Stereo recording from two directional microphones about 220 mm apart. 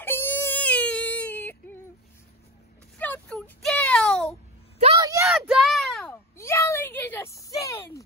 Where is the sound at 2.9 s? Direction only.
10° left (ahead or behind).